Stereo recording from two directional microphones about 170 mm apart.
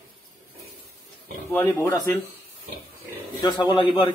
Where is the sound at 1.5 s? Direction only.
10° left (ahead or behind).